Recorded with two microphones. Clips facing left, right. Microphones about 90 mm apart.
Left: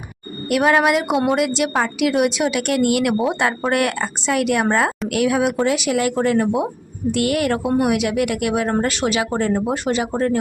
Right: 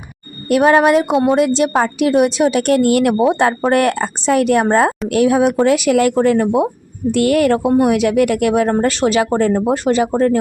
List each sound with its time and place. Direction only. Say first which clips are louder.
0.5 s a woman's voice: right 5 dB; 35° right (ahead or behind)
5.6 s a woman's voice: right 6 dB; 45° right (ahead or behind)